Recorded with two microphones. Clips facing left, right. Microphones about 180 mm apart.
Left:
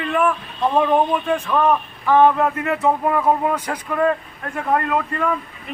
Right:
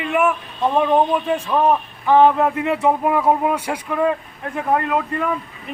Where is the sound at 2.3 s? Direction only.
15° right (ahead or behind).